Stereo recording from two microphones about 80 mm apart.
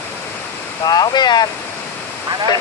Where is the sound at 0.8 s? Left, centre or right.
Left.